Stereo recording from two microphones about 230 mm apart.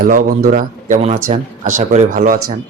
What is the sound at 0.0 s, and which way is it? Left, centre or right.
Speech, right.